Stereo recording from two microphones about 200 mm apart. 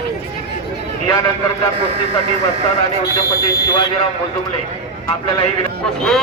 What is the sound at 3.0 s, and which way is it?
Speech, 20° left (ahead or behind).